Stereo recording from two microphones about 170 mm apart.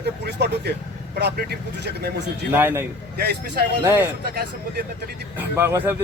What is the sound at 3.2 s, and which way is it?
Speech, 70° right (ahead or behind).